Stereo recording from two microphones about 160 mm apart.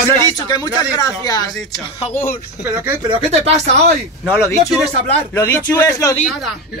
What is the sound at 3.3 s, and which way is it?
Speech, 40° right (ahead or behind).